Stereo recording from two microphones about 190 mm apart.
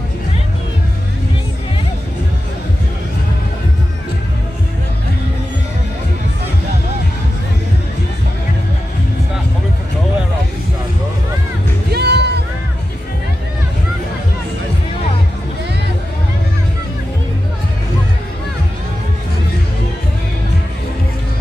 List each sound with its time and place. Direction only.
11.9 s music: 60° right (ahead or behind)